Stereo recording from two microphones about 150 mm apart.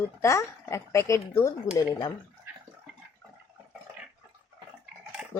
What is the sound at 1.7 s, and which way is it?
Speech, 30° left (ahead or behind).